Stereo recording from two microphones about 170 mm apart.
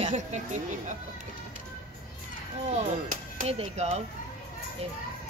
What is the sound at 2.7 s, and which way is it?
Speech, 50° right (ahead or behind).